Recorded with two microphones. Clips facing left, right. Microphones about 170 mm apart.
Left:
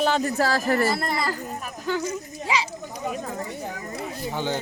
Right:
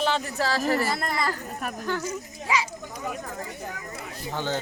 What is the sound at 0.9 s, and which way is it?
Speech, 10° left (ahead or behind).